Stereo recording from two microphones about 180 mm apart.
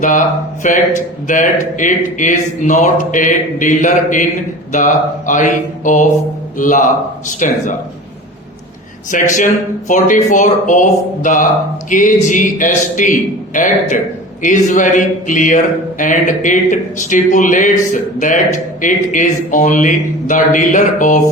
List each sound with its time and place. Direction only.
0.0 s speech: 45° left (ahead or behind)
9.0 s speech: 45° left (ahead or behind)